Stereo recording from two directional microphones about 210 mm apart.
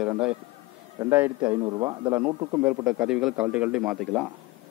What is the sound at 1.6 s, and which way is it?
Speech, 20° right (ahead or behind).